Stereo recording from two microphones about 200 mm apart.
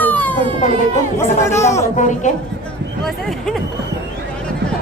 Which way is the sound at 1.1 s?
15° left (ahead or behind).